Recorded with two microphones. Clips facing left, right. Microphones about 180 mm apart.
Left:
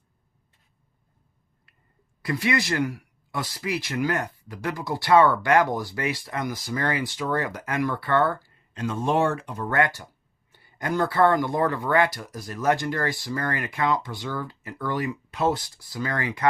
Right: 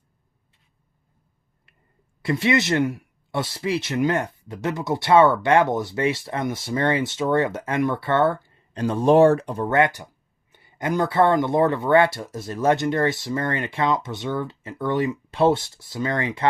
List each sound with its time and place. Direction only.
2.2 s speech: 25° right (ahead or behind)
8.8 s speech: 35° right (ahead or behind)
9.7 s speech: 20° right (ahead or behind)